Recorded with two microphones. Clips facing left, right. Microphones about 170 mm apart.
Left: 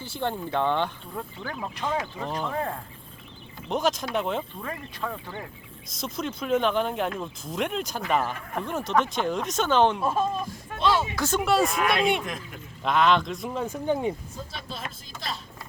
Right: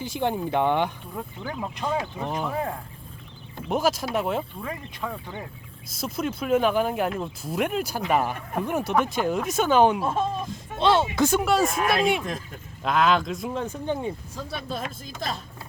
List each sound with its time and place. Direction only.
0.0 s speech: 15° right (ahead or behind)
10.2 s speech: 25° right (ahead or behind)
11.4 s speech: centre (ahead or behind)
13.7 s speech: 10° left (ahead or behind)
14.7 s speech: 50° right (ahead or behind)